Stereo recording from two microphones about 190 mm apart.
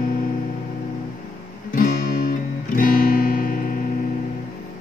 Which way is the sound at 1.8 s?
45° left (ahead or behind).